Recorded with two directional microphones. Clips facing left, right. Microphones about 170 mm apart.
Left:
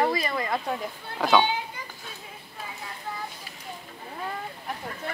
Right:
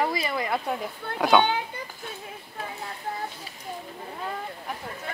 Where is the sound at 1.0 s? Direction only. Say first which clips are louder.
Right 6 dB; 55° right (ahead or behind).